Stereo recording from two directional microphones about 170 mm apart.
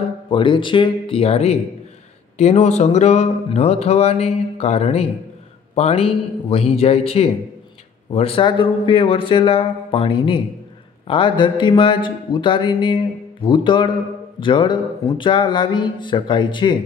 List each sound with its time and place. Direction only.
0.3 s speech: 30° left (ahead or behind)